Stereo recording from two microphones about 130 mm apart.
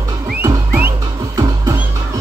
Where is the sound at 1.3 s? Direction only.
25° right (ahead or behind).